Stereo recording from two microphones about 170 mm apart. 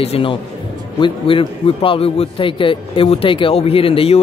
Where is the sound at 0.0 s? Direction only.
35° left (ahead or behind).